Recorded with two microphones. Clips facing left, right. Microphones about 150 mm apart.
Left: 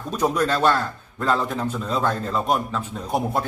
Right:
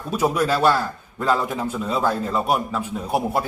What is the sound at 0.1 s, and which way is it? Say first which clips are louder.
A man's voice: right 1 dB; 10° right (ahead or behind).